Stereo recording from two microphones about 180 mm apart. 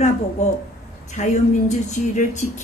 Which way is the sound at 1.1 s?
40° left (ahead or behind).